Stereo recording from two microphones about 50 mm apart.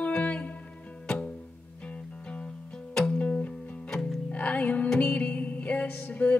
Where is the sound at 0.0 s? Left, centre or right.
Left.